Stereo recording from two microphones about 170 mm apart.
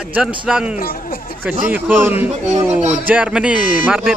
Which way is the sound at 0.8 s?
60° left (ahead or behind).